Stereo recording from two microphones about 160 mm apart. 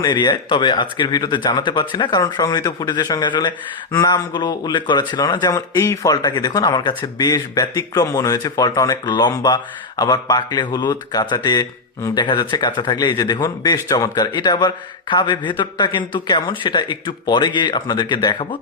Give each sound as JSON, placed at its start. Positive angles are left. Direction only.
{"t": 0.0, "sound": "speech", "side_deg": 30}